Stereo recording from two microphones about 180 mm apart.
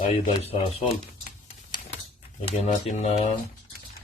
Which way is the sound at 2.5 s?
35° left (ahead or behind).